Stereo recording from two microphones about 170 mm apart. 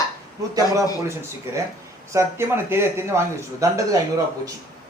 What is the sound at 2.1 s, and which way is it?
A man's voice, 20° right (ahead or behind).